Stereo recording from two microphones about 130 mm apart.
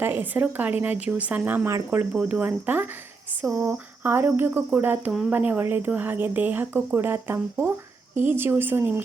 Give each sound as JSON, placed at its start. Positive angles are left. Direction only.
{"t": 0.0, "sound": "a woman's voice", "side_deg": -15}